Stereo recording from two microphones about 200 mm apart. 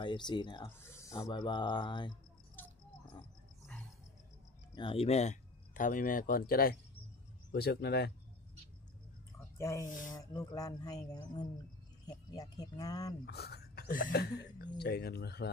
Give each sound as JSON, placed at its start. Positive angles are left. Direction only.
{"t": 0.0, "sound": "speech", "side_deg": 25}
{"t": 2.6, "sound": "a sound", "side_deg": 10}
{"t": 4.7, "sound": "speech", "side_deg": 30}
{"t": 9.6, "sound": "speech", "side_deg": 15}
{"t": 9.8, "sound": "speech", "side_deg": 40}
{"t": 10.1, "sound": "speech", "side_deg": 20}
{"t": 13.2, "sound": "speech", "side_deg": 55}